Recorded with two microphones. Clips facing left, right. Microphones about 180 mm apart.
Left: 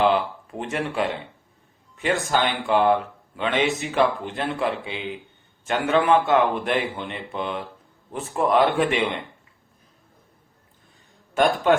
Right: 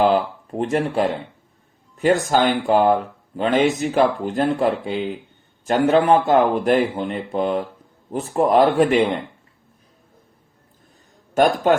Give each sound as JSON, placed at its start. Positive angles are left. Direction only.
{"t": 0.0, "sound": "speech", "side_deg": -40}
{"t": 2.2, "sound": "speech", "side_deg": -40}
{"t": 11.3, "sound": "a man's voice", "side_deg": -45}